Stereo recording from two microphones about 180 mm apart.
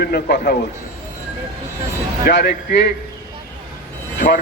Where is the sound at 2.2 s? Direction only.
65° left (ahead or behind).